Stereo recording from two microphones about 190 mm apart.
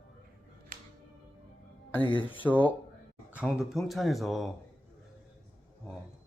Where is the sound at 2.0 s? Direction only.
25° left (ahead or behind).